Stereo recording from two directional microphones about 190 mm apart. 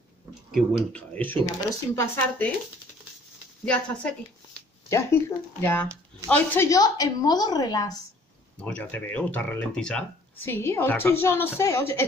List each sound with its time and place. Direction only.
0.6 s speech: 5° left (ahead or behind)
3.6 s a woman's voice: 5° left (ahead or behind)
8.5 s speech: 5° left (ahead or behind)